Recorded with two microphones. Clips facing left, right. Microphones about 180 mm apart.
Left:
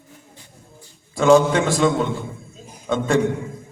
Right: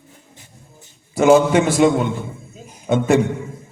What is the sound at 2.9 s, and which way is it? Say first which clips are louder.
Speech: right 4 dB; 20° right (ahead or behind).